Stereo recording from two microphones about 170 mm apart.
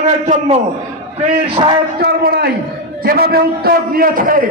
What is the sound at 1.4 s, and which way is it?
Speech, 30° right (ahead or behind).